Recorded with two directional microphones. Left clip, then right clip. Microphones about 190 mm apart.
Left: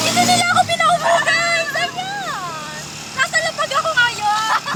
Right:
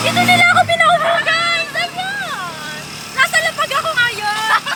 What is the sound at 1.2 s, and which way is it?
Music, 20° left (ahead or behind).